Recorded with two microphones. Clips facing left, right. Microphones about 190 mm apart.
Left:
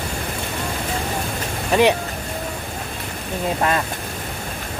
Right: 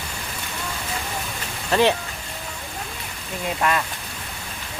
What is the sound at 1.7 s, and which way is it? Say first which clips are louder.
Speech: left 3 dB; 15° left (ahead or behind).